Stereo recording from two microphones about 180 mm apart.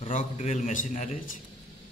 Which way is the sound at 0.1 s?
45° left (ahead or behind).